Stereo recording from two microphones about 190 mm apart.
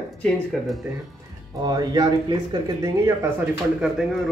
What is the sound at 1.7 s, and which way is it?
Speech, 20° right (ahead or behind).